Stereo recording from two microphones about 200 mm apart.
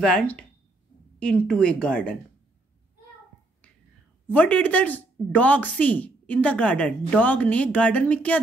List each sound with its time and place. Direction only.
0.0 s speech: 5° left (ahead or behind)
4.3 s a woman's voice: 10° left (ahead or behind)